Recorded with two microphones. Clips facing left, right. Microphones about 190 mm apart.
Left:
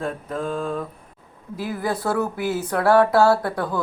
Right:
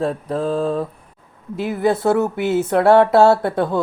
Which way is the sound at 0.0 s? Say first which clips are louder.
Right 6 dB; 35° right (ahead or behind).